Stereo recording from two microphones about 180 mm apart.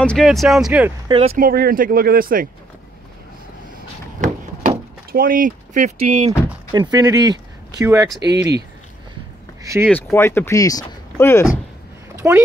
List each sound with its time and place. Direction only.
0.0 s speech: 5° left (ahead or behind)
1.0 s speech: 25° right (ahead or behind)
1.4 s speech: 55° right (ahead or behind)
4.2 s a sound: 50° right (ahead or behind)
6.7 s speech: 20° right (ahead or behind)
9.6 s a sound: 15° right (ahead or behind)
9.8 s speech: 10° left (ahead or behind)
12.2 s speech: 15° right (ahead or behind)